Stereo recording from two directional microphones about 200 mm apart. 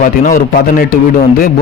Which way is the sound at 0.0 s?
45° left (ahead or behind).